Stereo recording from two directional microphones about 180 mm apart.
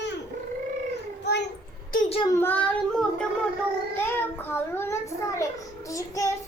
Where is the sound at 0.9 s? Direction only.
70° left (ahead or behind).